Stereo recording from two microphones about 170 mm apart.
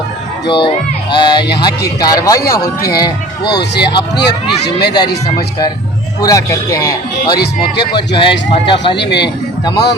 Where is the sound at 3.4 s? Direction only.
75° left (ahead or behind).